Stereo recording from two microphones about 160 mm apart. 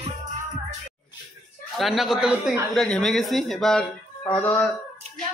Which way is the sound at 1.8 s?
Centre (ahead or behind).